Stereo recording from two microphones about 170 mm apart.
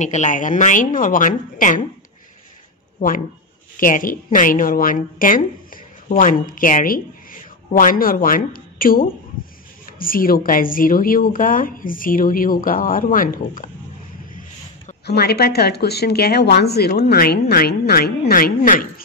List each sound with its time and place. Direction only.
0.0 s a woman's voice: 45° left (ahead or behind)
3.8 s a woman's voice: 55° left (ahead or behind)
15.0 s a woman's voice: 70° left (ahead or behind)